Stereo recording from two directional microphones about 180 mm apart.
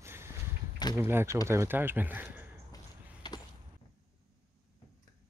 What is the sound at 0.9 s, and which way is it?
Speech, 10° right (ahead or behind).